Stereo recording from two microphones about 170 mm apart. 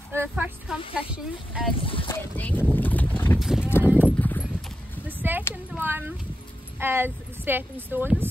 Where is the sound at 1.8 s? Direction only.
30° left (ahead or behind).